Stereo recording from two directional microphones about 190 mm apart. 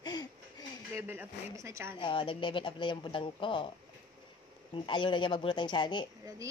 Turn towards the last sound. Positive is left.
turn(degrees=25)  # may be behind; listen again after turning